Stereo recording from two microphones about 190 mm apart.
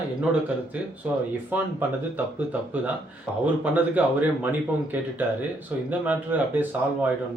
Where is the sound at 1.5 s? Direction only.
10° right (ahead or behind).